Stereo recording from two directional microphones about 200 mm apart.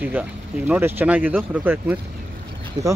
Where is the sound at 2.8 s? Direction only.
20° right (ahead or behind).